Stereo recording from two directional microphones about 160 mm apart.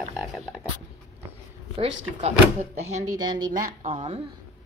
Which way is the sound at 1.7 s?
45° right (ahead or behind).